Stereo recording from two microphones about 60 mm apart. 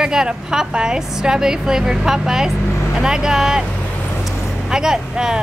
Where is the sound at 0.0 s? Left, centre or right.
Centre.